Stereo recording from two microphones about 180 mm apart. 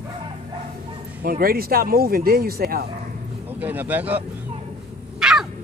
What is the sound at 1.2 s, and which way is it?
Speech, 55° right (ahead or behind).